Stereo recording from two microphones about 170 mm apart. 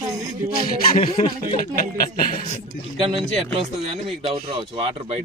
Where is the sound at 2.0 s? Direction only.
60° left (ahead or behind).